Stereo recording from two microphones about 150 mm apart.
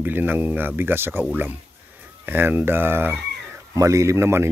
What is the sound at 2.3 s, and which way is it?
A man's voice, 15° right (ahead or behind).